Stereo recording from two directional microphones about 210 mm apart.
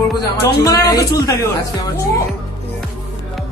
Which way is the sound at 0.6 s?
20° left (ahead or behind).